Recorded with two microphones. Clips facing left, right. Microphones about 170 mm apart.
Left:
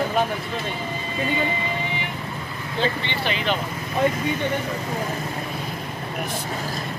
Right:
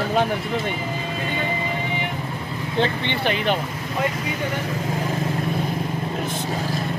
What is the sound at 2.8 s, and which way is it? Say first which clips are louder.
Speech: right 2 dB; 55° right (ahead or behind).